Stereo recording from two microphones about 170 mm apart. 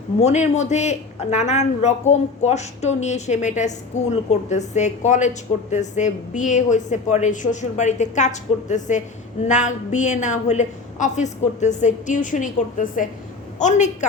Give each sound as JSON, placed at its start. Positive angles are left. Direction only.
{"t": 0.2, "sound": "a woman's voice", "side_deg": 40}